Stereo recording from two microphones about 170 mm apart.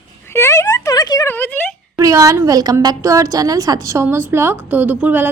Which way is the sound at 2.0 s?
20° right (ahead or behind).